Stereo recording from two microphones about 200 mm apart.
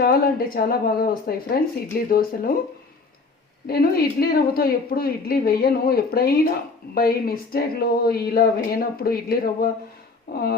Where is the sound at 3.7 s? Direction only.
50° left (ahead or behind).